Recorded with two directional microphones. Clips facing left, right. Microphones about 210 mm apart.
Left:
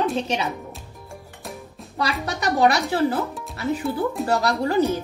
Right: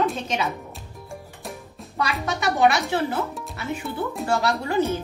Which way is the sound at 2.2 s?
35° left (ahead or behind).